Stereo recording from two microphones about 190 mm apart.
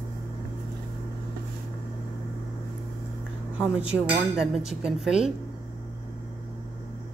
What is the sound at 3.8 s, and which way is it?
Speech, 5° right (ahead or behind).